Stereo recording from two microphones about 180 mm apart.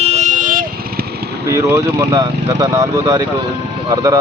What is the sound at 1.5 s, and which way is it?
Speech, 15° right (ahead or behind).